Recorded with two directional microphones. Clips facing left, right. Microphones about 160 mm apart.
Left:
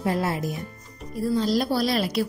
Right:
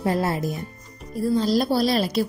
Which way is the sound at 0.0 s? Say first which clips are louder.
Right 2 dB; 35° right (ahead or behind).